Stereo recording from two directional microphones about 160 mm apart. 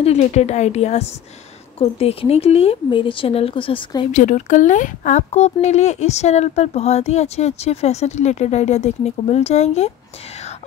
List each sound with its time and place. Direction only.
0.0 s speech: 45° left (ahead or behind)
4.1 s speech: 50° left (ahead or behind)